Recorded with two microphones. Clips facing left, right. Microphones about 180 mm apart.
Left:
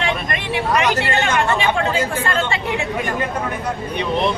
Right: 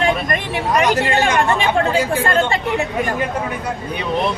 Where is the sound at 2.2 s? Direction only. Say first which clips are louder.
Right 4 dB; 35° right (ahead or behind).